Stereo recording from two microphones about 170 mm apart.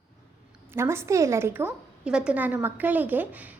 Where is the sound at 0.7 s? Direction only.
15° right (ahead or behind).